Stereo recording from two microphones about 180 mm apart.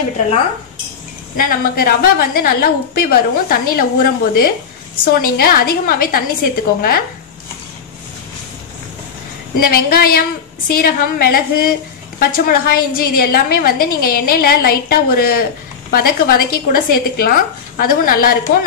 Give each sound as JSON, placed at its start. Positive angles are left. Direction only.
{"t": 1.3, "sound": "a woman's voice", "side_deg": 55}
{"t": 9.6, "sound": "a woman's voice", "side_deg": 55}